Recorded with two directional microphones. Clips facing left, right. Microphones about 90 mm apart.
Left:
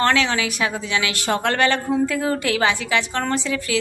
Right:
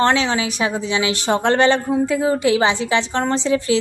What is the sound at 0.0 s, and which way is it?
A woman's voice, 25° right (ahead or behind).